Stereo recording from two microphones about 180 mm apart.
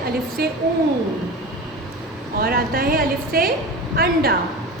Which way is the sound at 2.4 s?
55° right (ahead or behind).